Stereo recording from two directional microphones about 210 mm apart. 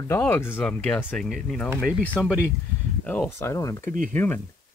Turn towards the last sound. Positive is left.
turn(degrees=10)  # may be behind; listen again after turning